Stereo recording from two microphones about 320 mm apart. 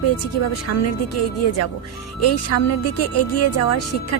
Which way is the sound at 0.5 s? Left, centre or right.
Left.